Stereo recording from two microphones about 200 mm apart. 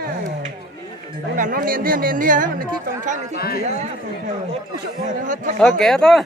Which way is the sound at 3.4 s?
50° left (ahead or behind).